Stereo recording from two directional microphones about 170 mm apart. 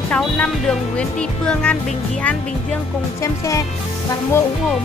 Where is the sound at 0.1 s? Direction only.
5° left (ahead or behind).